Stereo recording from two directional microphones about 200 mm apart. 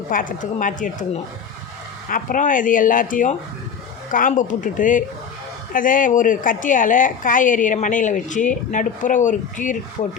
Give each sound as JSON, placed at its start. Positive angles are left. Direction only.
{"t": 0.1, "sound": "a woman's voice", "side_deg": 45}